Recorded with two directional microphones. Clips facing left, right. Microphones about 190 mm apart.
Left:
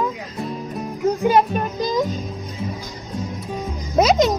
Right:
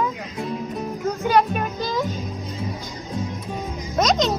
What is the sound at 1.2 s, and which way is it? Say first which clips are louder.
Speech: even; centre (ahead or behind).